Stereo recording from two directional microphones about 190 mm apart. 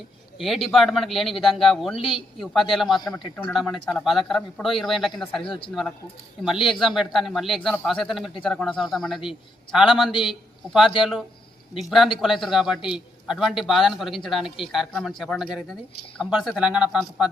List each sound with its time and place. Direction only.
0.3 s a man's voice: centre (ahead or behind)
5.4 s speech: 25° left (ahead or behind)
6.4 s a man's voice: centre (ahead or behind)